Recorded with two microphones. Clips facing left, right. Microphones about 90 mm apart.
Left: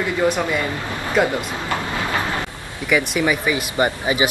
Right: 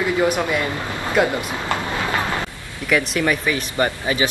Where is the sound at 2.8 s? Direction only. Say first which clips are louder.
Even; 5° left (ahead or behind).